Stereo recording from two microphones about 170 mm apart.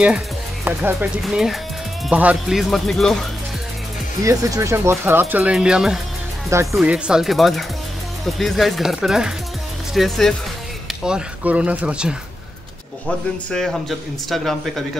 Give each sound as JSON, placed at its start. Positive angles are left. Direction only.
{"t": 1.2, "sound": "speech", "side_deg": 0}
{"t": 4.2, "sound": "speech", "side_deg": -20}
{"t": 6.5, "sound": "speech", "side_deg": -15}
{"t": 6.8, "sound": "speech", "side_deg": -5}
{"t": 13.5, "sound": "speech", "side_deg": 0}